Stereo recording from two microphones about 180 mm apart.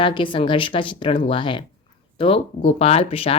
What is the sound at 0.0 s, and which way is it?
Speech, 25° left (ahead or behind).